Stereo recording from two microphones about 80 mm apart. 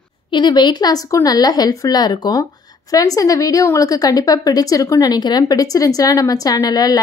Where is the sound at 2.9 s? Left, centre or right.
Left.